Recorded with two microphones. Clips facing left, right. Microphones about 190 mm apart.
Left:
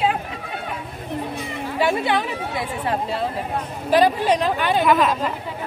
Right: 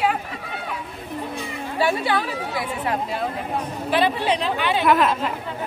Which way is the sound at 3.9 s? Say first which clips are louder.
Left 4 dB; 40° left (ahead or behind).